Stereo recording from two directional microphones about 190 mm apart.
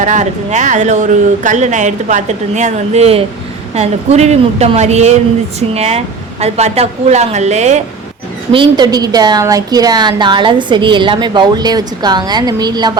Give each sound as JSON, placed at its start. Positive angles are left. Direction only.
{"t": 0.0, "sound": "speech", "side_deg": -40}
{"t": 8.5, "sound": "speech", "side_deg": -20}